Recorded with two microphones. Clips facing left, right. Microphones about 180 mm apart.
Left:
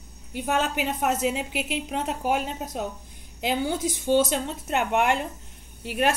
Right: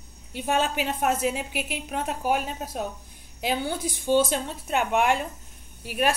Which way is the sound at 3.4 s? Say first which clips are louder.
Left 2 dB; 20° left (ahead or behind).